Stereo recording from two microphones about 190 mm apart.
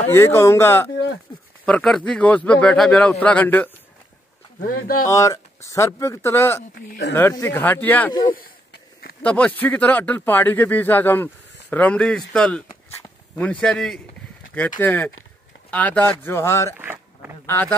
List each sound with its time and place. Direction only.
0.1 s a man's voice: 15° left (ahead or behind)
1.3 s speech: 20° left (ahead or behind)
1.7 s a man's voice: 5° left (ahead or behind)
4.6 s speech: 50° left (ahead or behind)
5.0 s a man's voice: 15° left (ahead or behind)
6.7 s speech: 60° left (ahead or behind)
7.2 s a man's voice: 10° left (ahead or behind)
8.1 s speech: 25° left (ahead or behind)
8.4 s wheeze: 55° left (ahead or behind)
9.2 s a man's voice: 5° left (ahead or behind)
16.7 s a sound: 10° right (ahead or behind)
17.5 s a man's voice: 10° left (ahead or behind)